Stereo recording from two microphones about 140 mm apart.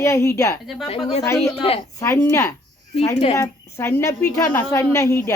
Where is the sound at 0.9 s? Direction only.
40° left (ahead or behind).